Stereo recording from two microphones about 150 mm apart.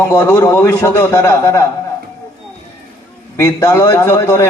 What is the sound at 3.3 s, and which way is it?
A man's voice, 20° left (ahead or behind).